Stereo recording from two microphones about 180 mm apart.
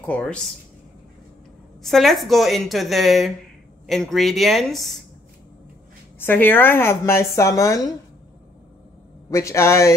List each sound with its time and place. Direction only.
0.0 s speech: 10° left (ahead or behind)
1.8 s speech: centre (ahead or behind)
6.1 s speech: 10° left (ahead or behind)
9.3 s speech: 15° left (ahead or behind)